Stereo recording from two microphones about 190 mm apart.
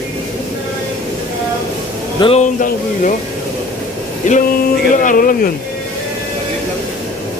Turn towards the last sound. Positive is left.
turn(degrees=50)  # may be behind; listen again after turning